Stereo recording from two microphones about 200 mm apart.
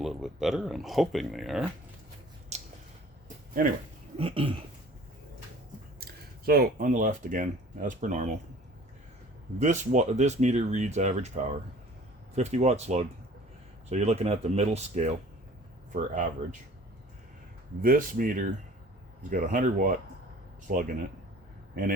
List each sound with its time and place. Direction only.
0.0 s speech: centre (ahead or behind)
2.5 s a sound: 35° right (ahead or behind)
4.2 s a sound: 25° right (ahead or behind)
6.0 s speech: 50° right (ahead or behind)
9.6 s speech: 35° right (ahead or behind)
17.8 s speech: 45° right (ahead or behind)